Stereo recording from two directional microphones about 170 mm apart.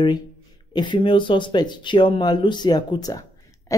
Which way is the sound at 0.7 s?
30° left (ahead or behind).